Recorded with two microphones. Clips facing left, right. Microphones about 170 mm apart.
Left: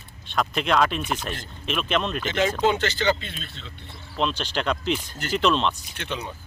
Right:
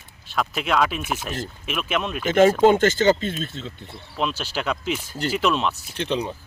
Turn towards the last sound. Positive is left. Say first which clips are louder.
# right 7 dB
turn(degrees=-30)  # may be behind; listen again after turning